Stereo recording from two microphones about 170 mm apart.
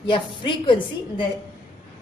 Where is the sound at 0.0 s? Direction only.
30° left (ahead or behind).